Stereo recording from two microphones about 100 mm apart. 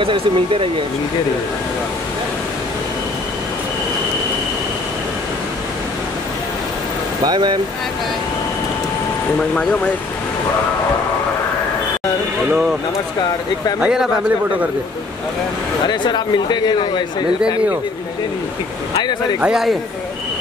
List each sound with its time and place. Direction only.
0.0 s speech: 65° right (ahead or behind)
7.2 s speech: 50° right (ahead or behind)
9.4 s speech: 5° left (ahead or behind)
13.7 s a man's voice: 10° right (ahead or behind)
15.9 s speech: 50° left (ahead or behind)
19.4 s a man's voice: 5° right (ahead or behind)